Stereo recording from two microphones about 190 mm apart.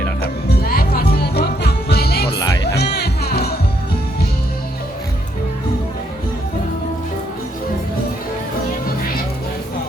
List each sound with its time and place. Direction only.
0.2 s music: 55° left (ahead or behind)